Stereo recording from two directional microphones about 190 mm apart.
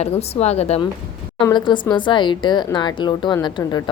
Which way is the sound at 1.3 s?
25° left (ahead or behind).